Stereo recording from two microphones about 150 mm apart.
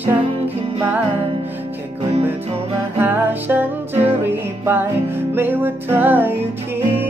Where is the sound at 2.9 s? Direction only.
15° right (ahead or behind).